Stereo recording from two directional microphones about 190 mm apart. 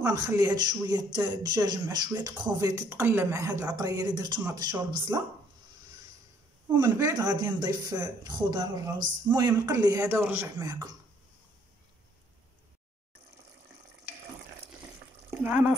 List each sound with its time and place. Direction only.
0.0 s speech: 15° right (ahead or behind)
6.7 s speech: 15° right (ahead or behind)